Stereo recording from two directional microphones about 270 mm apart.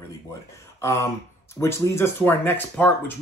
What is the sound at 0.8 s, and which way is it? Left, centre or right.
Speech, centre.